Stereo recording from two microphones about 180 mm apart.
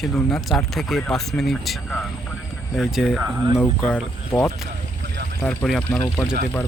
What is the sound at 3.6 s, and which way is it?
Speech, 10° left (ahead or behind).